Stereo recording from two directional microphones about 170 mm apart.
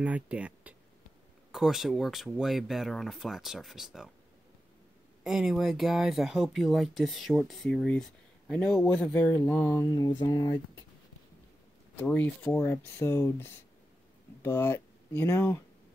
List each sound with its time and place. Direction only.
0.0 s speech: 10° right (ahead or behind)
5.2 s speech: centre (ahead or behind); by 10.6 s 25° left (ahead or behind)
12.0 s speech: 10° left (ahead or behind)